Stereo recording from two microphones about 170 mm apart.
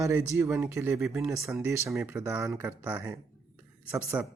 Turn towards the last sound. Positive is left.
turn(degrees=-10)  # may be behind; listen again after turning